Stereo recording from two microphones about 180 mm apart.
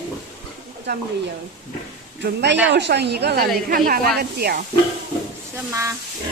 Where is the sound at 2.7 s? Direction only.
70° right (ahead or behind).